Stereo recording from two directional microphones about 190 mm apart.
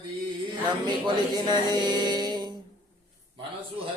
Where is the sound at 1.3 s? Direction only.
20° right (ahead or behind).